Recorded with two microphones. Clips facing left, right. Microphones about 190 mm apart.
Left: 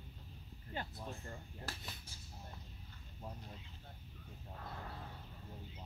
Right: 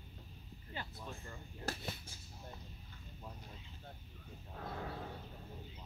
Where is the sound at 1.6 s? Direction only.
45° right (ahead or behind).